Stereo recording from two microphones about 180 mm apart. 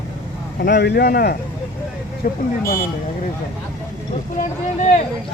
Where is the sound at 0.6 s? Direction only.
65° left (ahead or behind); by 2.4 s 50° left (ahead or behind).